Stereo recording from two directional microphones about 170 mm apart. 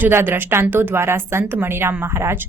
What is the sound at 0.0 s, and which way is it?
Speech, 10° right (ahead or behind).